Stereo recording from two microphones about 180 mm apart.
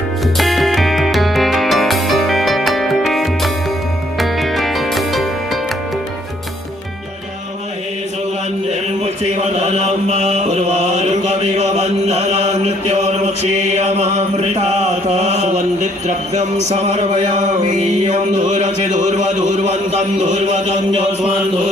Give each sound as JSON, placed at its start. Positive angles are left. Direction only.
{"t": 0.4, "sound": "music", "side_deg": 0}
{"t": 8.6, "sound": "mantra", "side_deg": -35}
{"t": 15.0, "sound": "a sound", "side_deg": -40}
{"t": 20.2, "sound": "a man's voice", "side_deg": -40}